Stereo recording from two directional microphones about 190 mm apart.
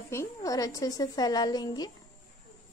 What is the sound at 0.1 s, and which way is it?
A woman's voice, 15° left (ahead or behind).